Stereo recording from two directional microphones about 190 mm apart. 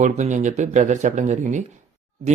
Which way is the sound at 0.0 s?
40° right (ahead or behind).